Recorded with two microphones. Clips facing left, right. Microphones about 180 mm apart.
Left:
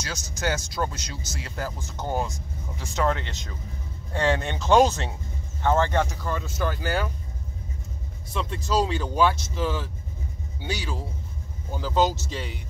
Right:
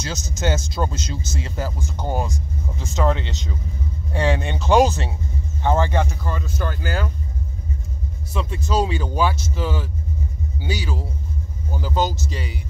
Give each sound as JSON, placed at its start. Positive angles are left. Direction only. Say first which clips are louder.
{"t": 0.0, "sound": "speech", "louder": "right 4 dB", "side_deg": -20}
{"t": 8.3, "sound": "speech", "louder": "right 2 dB", "side_deg": -5}